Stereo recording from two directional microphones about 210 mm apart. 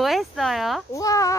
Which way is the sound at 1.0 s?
15° left (ahead or behind).